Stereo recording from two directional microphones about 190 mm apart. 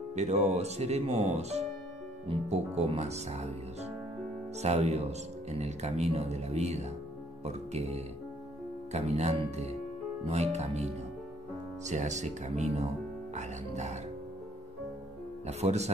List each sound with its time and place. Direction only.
0.1 s speech: 35° right (ahead or behind)
4.6 s speech: 35° right (ahead or behind)
15.4 s speech: 35° right (ahead or behind)